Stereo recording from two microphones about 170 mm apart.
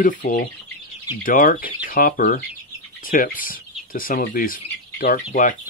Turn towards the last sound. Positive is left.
turn(degrees=50)  # may be behind; listen again after turning